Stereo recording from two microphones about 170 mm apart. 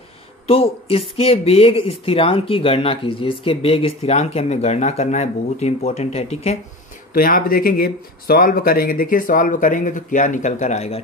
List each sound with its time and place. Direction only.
0.5 s speech: 35° left (ahead or behind)
7.2 s speech: 55° left (ahead or behind); by 11.0 s 40° left (ahead or behind)